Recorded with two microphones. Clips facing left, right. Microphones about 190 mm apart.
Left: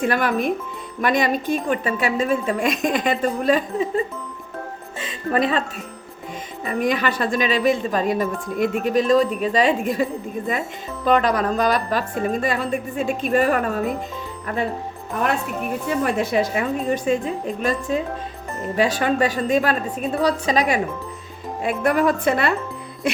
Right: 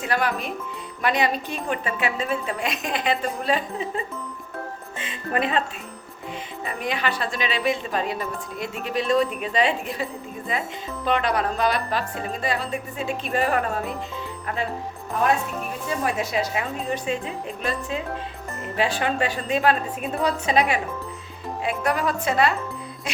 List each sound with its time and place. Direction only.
0.0 s a woman's voice: 55° left (ahead or behind); by 5.6 s 35° left (ahead or behind)
6.7 s speech: 45° left (ahead or behind)
16.0 s speech: 55° left (ahead or behind)
16.9 s speech: 45° left (ahead or behind)
21.6 s speech: 55° left (ahead or behind)